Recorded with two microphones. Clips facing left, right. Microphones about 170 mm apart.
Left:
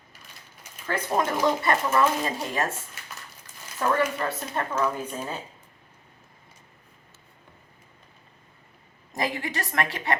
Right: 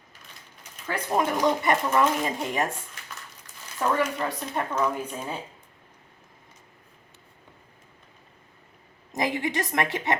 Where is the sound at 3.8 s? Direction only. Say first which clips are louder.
Left 1 dB; 10° right (ahead or behind).